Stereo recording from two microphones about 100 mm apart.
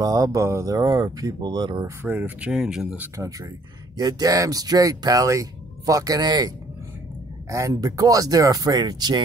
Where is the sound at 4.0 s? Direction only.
40° right (ahead or behind).